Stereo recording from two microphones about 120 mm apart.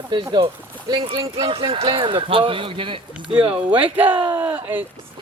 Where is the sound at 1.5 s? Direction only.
50° right (ahead or behind).